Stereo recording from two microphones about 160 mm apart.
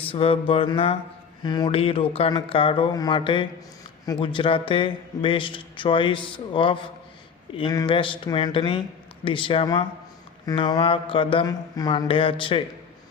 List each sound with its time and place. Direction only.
0.0 s speech: 35° left (ahead or behind)